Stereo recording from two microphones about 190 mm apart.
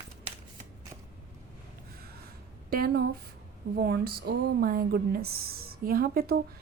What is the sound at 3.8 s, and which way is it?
Speech, 55° right (ahead or behind).